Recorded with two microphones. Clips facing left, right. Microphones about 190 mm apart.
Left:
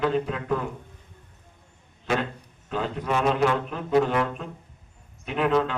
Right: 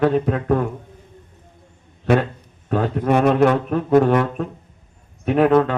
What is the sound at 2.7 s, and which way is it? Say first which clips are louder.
A man's voice: right 8 dB; 55° right (ahead or behind).